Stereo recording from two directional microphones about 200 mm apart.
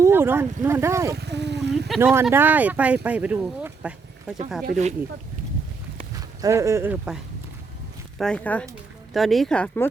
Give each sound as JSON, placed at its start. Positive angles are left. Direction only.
{"t": 0.0, "sound": "speech", "side_deg": -10}
{"t": 1.1, "sound": "a sound", "side_deg": -55}
{"t": 2.2, "sound": "speech", "side_deg": -10}
{"t": 4.6, "sound": "speech", "side_deg": -35}
{"t": 6.4, "sound": "speech", "side_deg": -15}
{"t": 8.2, "sound": "speech", "side_deg": 5}